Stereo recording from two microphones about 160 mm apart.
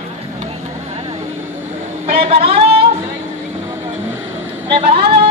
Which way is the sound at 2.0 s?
40° right (ahead or behind).